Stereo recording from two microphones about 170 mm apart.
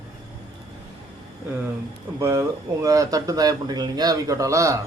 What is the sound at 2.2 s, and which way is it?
Speech, 20° right (ahead or behind).